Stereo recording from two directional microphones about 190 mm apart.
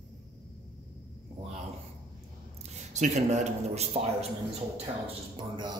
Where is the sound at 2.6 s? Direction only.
40° right (ahead or behind).